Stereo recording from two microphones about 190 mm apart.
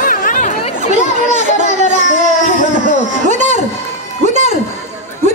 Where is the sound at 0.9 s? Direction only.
40° right (ahead or behind).